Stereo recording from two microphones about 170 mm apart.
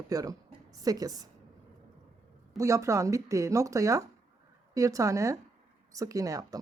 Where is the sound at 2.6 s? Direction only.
20° right (ahead or behind).